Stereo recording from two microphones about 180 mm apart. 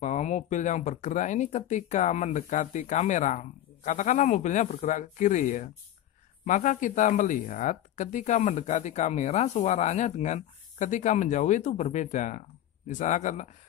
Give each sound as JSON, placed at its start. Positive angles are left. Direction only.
{"t": 0.0, "sound": "speech", "side_deg": 40}